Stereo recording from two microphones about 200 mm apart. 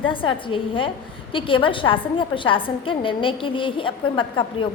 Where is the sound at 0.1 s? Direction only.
25° left (ahead or behind).